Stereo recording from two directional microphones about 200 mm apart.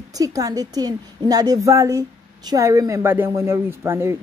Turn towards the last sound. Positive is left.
turn(degrees=-15)  # may be behind; listen again after turning